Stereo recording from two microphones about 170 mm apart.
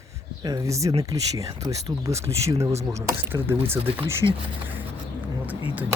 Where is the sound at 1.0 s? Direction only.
20° right (ahead or behind).